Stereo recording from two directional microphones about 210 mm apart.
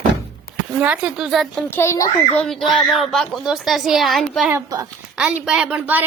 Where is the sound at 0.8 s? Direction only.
5° right (ahead or behind).